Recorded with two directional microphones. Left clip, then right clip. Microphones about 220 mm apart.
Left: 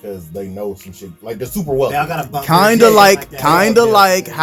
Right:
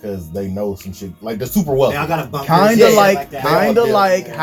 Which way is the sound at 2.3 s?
50° left (ahead or behind).